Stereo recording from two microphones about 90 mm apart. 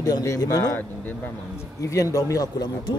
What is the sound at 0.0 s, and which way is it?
Speech, 40° left (ahead or behind).